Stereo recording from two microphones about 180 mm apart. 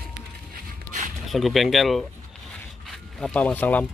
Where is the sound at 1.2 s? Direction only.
Centre (ahead or behind).